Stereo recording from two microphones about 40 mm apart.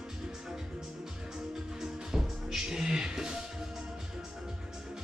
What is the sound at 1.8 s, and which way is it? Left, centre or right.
Music, centre.